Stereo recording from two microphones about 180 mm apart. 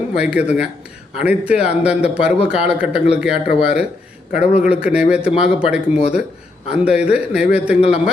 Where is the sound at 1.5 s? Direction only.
35° left (ahead or behind).